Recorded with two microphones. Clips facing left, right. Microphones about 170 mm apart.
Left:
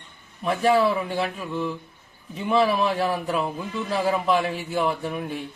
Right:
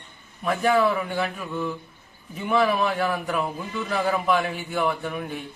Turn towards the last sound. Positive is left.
turn(degrees=30)  # may be behind; listen again after turning